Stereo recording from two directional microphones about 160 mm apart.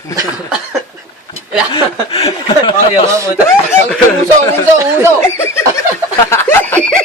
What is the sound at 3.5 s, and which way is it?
Speech, 15° left (ahead or behind).